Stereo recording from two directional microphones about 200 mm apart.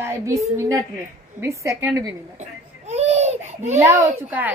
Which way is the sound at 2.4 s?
35° right (ahead or behind).